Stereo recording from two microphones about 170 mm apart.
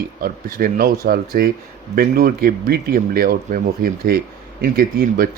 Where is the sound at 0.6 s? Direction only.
60° right (ahead or behind).